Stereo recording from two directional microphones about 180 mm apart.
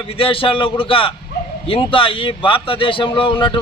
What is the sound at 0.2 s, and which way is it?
A man's voice, 30° left (ahead or behind).